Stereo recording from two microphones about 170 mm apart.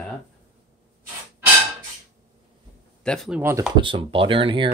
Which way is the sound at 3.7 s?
30° right (ahead or behind).